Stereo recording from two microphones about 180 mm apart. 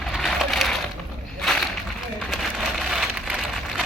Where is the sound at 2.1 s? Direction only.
Centre (ahead or behind).